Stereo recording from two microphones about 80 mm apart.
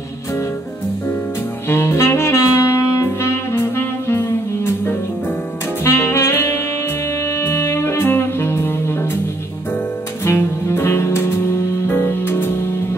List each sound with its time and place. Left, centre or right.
1.7 s saxophone: left
7.2 s music: left
10.2 s music: left